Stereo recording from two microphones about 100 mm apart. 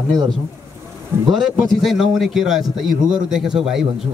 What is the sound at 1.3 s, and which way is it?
A man's voice, centre (ahead or behind).